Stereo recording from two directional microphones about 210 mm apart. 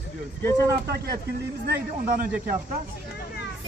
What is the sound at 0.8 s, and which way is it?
A man's voice, 50° right (ahead or behind).